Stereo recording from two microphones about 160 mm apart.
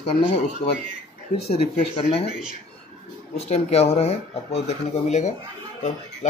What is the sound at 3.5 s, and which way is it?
Speech, 40° left (ahead or behind).